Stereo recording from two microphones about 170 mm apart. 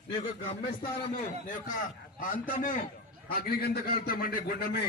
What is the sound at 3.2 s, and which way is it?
A man's voice, 65° left (ahead or behind).